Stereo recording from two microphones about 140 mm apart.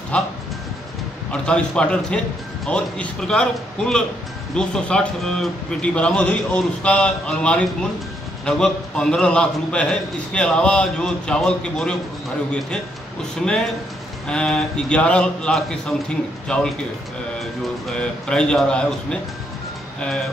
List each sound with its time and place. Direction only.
0.1 s speech: 10° left (ahead or behind)
1.3 s a man's voice: 10° left (ahead or behind)
14.2 s a man's voice: 5° left (ahead or behind)